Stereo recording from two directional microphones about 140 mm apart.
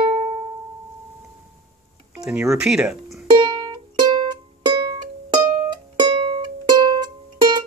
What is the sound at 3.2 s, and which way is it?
Music, 30° right (ahead or behind).